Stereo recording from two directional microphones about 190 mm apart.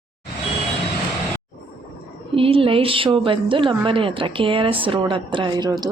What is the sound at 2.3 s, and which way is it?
A woman's voice, 30° right (ahead or behind).